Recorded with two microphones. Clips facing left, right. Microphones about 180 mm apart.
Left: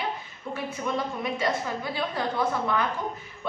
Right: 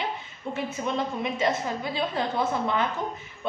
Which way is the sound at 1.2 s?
20° right (ahead or behind).